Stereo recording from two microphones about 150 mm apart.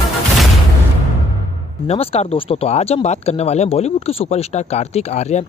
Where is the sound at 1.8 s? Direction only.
45° left (ahead or behind).